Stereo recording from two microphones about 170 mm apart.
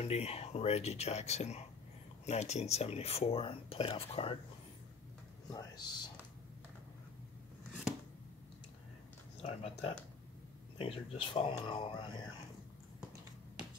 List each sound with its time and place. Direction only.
0.0 s speech: 40° left (ahead or behind)
5.5 s speech: 25° left (ahead or behind)
9.4 s speech: 35° left (ahead or behind)